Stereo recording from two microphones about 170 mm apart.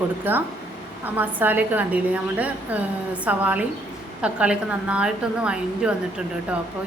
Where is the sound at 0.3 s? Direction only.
10° right (ahead or behind).